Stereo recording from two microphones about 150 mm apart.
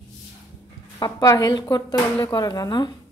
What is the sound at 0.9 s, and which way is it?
Speech, 25° left (ahead or behind).